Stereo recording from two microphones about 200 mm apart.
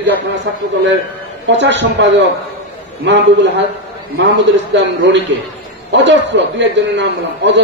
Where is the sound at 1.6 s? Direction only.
60° right (ahead or behind).